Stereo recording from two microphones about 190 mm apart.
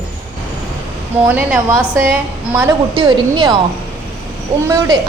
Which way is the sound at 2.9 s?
20° right (ahead or behind).